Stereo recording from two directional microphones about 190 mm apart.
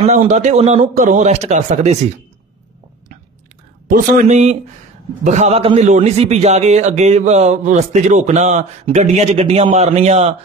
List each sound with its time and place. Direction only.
0.0 s a man's voice: 35° right (ahead or behind)
3.8 s a man's voice: 45° right (ahead or behind)